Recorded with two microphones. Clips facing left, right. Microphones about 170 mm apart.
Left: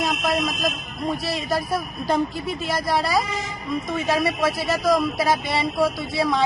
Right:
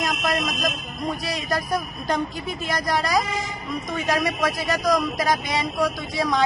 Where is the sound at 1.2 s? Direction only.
5° left (ahead or behind).